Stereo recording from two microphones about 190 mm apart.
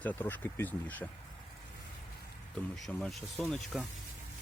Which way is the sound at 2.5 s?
5° left (ahead or behind).